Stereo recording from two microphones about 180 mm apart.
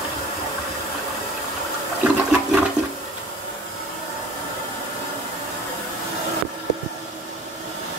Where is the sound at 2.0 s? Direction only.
5° right (ahead or behind).